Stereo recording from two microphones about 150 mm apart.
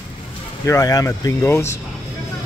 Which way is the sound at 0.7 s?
25° left (ahead or behind).